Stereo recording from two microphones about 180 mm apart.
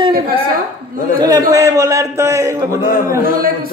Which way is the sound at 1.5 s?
15° right (ahead or behind).